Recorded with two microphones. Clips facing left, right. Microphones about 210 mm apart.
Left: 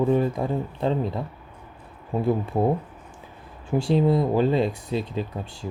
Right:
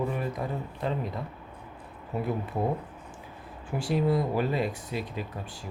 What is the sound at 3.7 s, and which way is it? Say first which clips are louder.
Speech: left 6 dB; 25° left (ahead or behind).